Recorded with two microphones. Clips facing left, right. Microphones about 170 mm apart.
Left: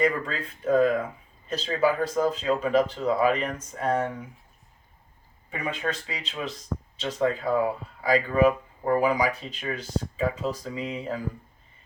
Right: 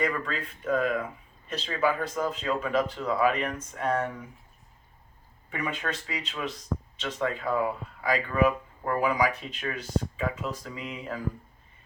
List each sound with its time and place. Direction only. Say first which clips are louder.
0.0 s speech: left 4 dB; 35° left (ahead or behind)
5.5 s speech: left 2 dB; 25° left (ahead or behind)